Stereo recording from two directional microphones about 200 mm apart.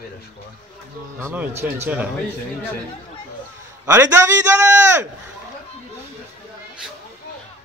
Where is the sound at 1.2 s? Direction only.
10° right (ahead or behind).